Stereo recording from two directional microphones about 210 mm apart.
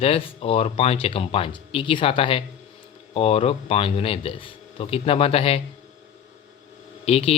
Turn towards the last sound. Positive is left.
turn(degrees=30)  # may be behind; listen again after turning